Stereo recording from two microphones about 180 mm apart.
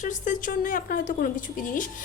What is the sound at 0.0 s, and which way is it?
A woman's voice, 45° left (ahead or behind).